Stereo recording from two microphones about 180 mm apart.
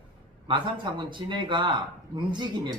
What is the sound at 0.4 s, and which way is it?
A man's voice, 25° right (ahead or behind).